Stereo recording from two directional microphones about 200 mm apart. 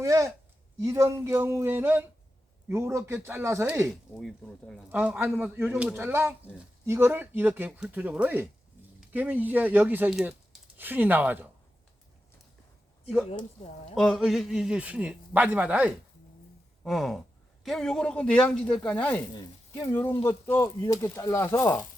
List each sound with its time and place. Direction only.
0.0 s speech: 15° right (ahead or behind)
3.8 s a man's voice: centre (ahead or behind)
4.9 s speech: 10° right (ahead or behind)
13.9 s a man's voice: centre (ahead or behind)
19.3 s speech: 20° left (ahead or behind)